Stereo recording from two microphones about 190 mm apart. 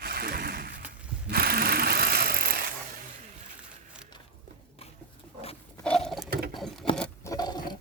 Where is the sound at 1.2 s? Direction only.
55° right (ahead or behind).